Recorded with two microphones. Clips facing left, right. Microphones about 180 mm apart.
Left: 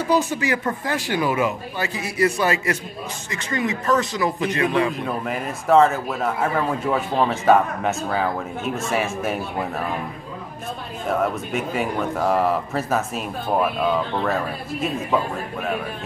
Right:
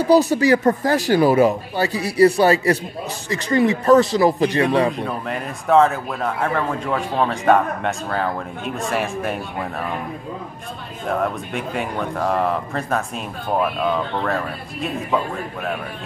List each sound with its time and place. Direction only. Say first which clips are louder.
0.0 s speech: right 6 dB; 35° right (ahead or behind)
4.9 s speech: even; 5° left (ahead or behind)
11.1 s speech: even; 5° left (ahead or behind)